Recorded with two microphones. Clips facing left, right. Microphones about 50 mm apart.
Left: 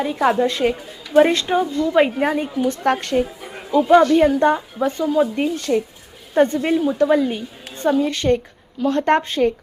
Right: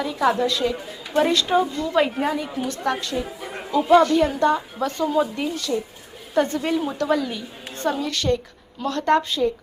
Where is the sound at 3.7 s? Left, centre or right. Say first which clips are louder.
Left 5 dB; centre.